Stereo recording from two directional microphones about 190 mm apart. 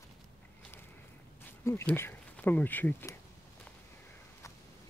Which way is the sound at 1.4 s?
15° left (ahead or behind).